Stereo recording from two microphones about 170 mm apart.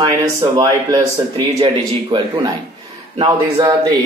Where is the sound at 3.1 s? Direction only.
30° right (ahead or behind).